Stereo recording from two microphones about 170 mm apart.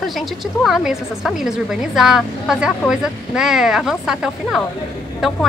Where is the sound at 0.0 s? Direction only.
Centre (ahead or behind).